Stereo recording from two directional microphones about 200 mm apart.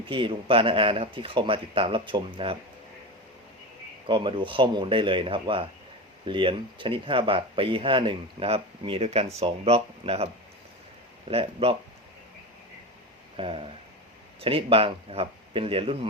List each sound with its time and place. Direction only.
0.0 s speech: 25° right (ahead or behind)
4.0 s speech: 25° right (ahead or behind)
11.3 s speech: 30° right (ahead or behind)
13.3 s speech: 25° right (ahead or behind)